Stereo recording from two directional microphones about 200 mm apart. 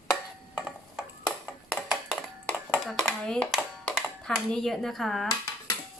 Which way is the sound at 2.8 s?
Centre (ahead or behind).